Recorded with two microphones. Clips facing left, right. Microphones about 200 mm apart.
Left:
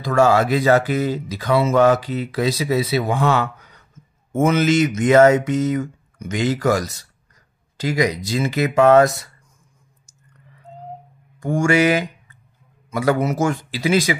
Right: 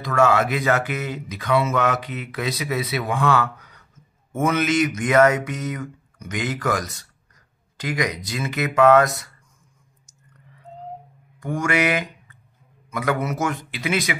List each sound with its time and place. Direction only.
0.0 s speech: 30° left (ahead or behind)
4.3 s mantra: 25° left (ahead or behind)
11.3 s mantra: 30° left (ahead or behind)
12.9 s speech: 30° left (ahead or behind)